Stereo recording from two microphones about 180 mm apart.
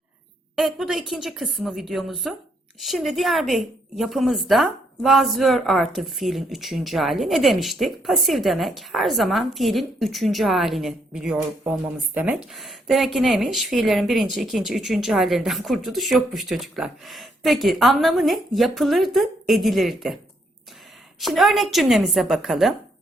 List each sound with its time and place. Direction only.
0.5 s a woman's voice: centre (ahead or behind)
21.2 s a woman's voice: centre (ahead or behind)